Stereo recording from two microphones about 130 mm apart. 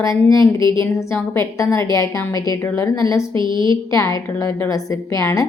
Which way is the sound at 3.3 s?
35° right (ahead or behind).